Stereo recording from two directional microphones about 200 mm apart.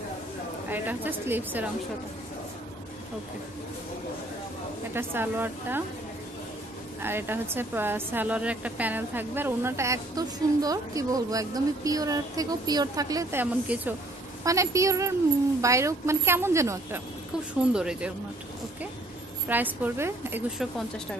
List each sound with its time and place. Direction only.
0.7 s speech: 10° right (ahead or behind)
4.9 s speech: 10° right (ahead or behind)
7.0 s speech: 10° right (ahead or behind)
17.7 s speech: 5° right (ahead or behind)
19.4 s speech: 10° right (ahead or behind)